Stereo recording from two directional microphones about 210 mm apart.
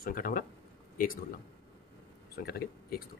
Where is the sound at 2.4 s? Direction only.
50° left (ahead or behind).